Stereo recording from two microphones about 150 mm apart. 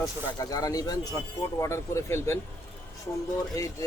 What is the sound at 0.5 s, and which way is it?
Speech, 25° left (ahead or behind).